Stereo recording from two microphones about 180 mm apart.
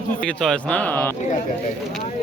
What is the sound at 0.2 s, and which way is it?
Speech, 5° left (ahead or behind).